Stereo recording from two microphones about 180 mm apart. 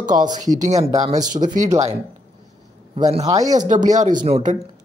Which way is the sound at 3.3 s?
20° right (ahead or behind).